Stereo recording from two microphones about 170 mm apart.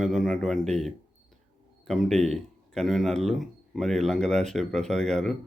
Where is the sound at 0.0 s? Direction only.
Centre (ahead or behind).